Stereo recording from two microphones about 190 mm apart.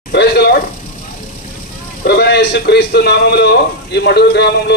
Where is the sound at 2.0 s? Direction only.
60° left (ahead or behind).